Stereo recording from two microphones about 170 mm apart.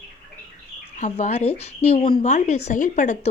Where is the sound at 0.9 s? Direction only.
45° left (ahead or behind).